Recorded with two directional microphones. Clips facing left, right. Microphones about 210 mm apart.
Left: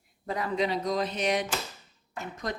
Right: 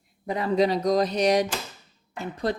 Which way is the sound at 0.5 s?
40° right (ahead or behind).